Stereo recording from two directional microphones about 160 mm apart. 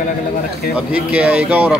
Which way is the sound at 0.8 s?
5° right (ahead or behind).